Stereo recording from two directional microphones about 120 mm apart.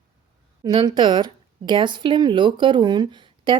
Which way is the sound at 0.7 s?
40° right (ahead or behind).